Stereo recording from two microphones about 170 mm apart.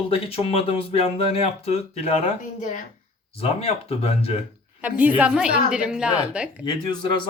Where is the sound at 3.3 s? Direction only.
35° left (ahead or behind).